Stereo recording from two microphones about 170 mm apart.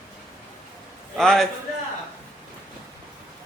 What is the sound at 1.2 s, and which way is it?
Speech, 5° left (ahead or behind).